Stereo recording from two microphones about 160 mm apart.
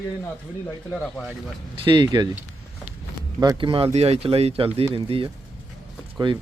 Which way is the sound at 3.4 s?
30° right (ahead or behind).